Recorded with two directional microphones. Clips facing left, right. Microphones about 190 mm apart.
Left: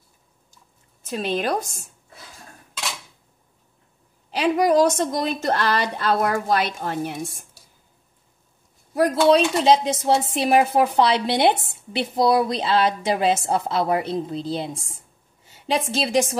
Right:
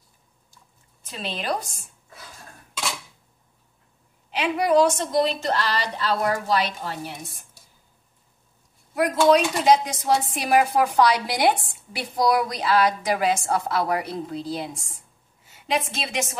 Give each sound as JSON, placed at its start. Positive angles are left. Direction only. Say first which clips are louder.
{"t": 1.0, "sound": "a woman's voice", "louder": "left 5 dB", "side_deg": 50}
{"t": 4.3, "sound": "a woman's voice", "louder": "left 3 dB", "side_deg": 40}
{"t": 8.9, "sound": "a woman's voice", "louder": "left 2 dB", "side_deg": 30}